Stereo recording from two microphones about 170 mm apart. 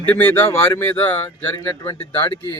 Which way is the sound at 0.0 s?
10° left (ahead or behind).